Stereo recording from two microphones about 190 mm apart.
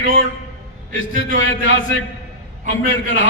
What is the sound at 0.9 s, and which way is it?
A man's voice, 90° left.